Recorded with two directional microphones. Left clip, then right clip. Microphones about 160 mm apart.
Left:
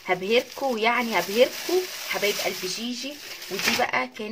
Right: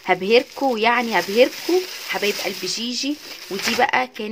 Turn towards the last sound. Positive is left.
turn(degrees=-50)  # may be behind; listen again after turning